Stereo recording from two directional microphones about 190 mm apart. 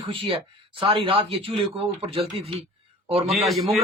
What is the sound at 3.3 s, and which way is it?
Speech, centre (ahead or behind).